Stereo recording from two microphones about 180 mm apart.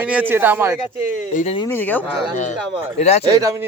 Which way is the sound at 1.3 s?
45° left (ahead or behind).